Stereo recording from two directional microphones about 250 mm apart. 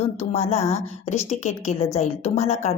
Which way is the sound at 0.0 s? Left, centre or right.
Left.